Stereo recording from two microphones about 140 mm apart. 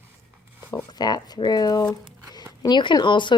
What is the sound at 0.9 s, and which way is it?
Speech, 30° left (ahead or behind).